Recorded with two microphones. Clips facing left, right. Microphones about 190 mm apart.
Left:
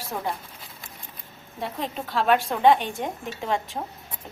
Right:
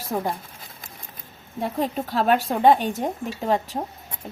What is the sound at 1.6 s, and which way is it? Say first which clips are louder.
A woman's voice: right 5 dB; 45° right (ahead or behind).